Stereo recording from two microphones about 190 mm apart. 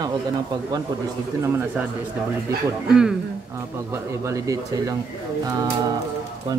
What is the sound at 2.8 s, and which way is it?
Speech, 5° right (ahead or behind).